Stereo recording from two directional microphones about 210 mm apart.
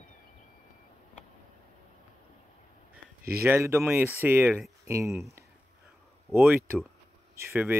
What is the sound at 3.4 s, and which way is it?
Speech, 10° right (ahead or behind).